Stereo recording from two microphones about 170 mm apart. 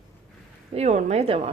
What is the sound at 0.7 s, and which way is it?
Speech, 40° right (ahead or behind).